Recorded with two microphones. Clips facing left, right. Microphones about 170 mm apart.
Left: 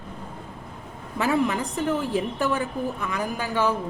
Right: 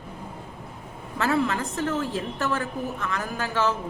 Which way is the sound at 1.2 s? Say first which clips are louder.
Left 1 dB; 15° left (ahead or behind).